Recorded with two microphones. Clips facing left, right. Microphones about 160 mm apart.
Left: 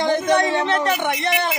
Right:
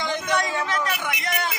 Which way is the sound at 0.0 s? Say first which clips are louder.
Left 8 dB; 45° left (ahead or behind).